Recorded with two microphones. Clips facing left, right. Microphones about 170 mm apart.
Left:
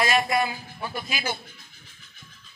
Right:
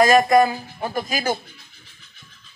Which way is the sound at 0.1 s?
50° right (ahead or behind).